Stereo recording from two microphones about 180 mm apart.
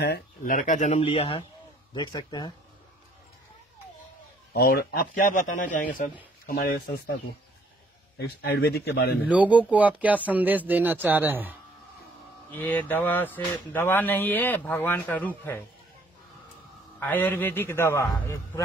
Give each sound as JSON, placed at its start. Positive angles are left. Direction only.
{"t": 0.0, "sound": "speech", "side_deg": 65}
{"t": 0.6, "sound": "speech", "side_deg": 45}
{"t": 4.6, "sound": "a man's voice", "side_deg": 60}
{"t": 8.2, "sound": "speech", "side_deg": 60}
{"t": 9.2, "sound": "speech", "side_deg": -10}
{"t": 12.4, "sound": "speech", "side_deg": 10}
{"t": 17.0, "sound": "speech", "side_deg": 10}